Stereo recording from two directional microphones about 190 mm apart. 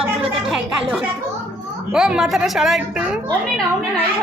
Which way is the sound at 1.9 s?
5° right (ahead or behind).